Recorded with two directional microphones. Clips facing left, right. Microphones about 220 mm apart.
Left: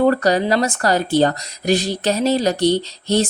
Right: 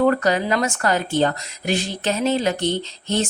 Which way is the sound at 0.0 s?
35° left (ahead or behind).